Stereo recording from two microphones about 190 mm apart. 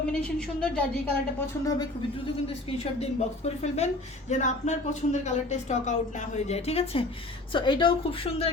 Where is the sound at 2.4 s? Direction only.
30° left (ahead or behind).